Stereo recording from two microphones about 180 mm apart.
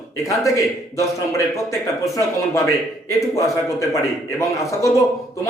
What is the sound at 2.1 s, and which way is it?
A man's voice, 20° left (ahead or behind).